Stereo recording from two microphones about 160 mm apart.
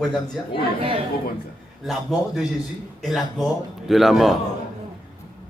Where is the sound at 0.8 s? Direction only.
35° right (ahead or behind).